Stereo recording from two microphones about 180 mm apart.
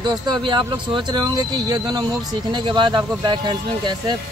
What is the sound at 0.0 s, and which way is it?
Speech, 25° right (ahead or behind).